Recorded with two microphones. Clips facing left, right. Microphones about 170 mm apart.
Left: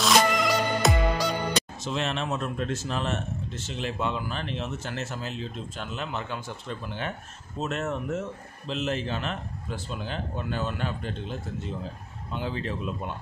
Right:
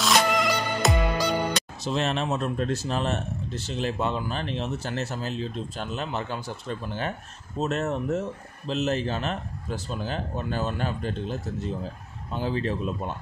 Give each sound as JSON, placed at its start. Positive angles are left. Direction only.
{"t": 0.0, "sound": "music", "side_deg": 0}
{"t": 1.8, "sound": "speech", "side_deg": -35}
{"t": 7.5, "sound": "speech", "side_deg": -40}